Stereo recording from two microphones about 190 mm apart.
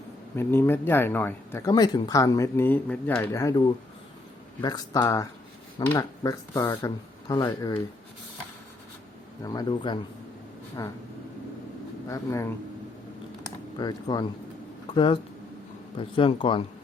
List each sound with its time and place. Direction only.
0.3 s speech: 10° left (ahead or behind)
4.6 s speech: 20° left (ahead or behind)
9.4 s speech: 20° left (ahead or behind)
12.0 s speech: 15° left (ahead or behind)
13.7 s speech: 20° left (ahead or behind)